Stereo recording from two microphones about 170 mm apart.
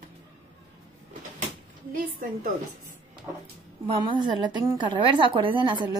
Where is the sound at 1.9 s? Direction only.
55° right (ahead or behind).